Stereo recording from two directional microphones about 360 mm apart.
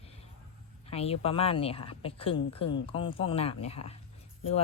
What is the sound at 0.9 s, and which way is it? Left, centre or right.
A woman's voice, centre.